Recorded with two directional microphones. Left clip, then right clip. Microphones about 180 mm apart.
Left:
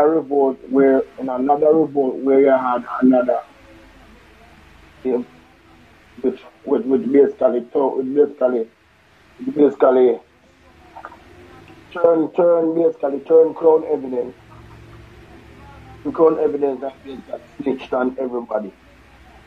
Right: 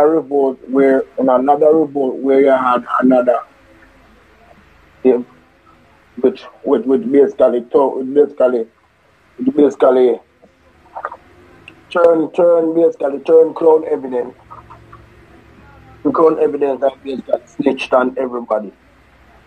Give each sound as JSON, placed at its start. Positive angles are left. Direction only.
{"t": 0.0, "sound": "speech", "side_deg": -55}
{"t": 5.0, "sound": "speech", "side_deg": -65}
{"t": 6.2, "sound": "speech", "side_deg": -60}
{"t": 11.9, "sound": "speech", "side_deg": -60}
{"t": 16.0, "sound": "speech", "side_deg": -60}